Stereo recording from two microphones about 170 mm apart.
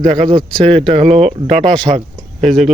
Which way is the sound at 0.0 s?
45° right (ahead or behind).